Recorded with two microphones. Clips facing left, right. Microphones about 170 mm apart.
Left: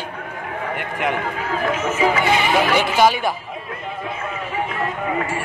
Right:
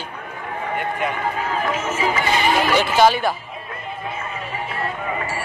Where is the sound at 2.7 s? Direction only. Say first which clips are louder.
Right 3 dB; 10° left (ahead or behind).